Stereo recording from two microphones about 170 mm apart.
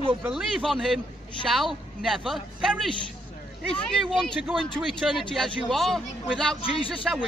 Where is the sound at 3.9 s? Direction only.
Centre (ahead or behind).